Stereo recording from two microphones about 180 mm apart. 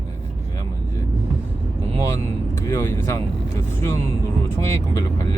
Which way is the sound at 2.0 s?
15° left (ahead or behind).